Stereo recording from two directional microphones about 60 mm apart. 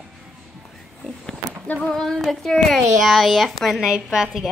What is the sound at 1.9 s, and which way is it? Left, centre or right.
A child's voice, centre.